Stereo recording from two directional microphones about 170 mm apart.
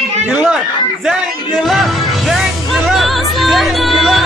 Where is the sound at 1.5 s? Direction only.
Centre (ahead or behind).